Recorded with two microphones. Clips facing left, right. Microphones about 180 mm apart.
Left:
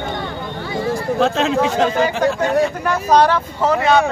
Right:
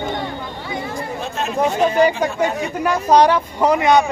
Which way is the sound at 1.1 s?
90° left.